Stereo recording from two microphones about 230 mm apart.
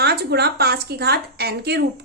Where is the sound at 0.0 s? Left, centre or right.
Right.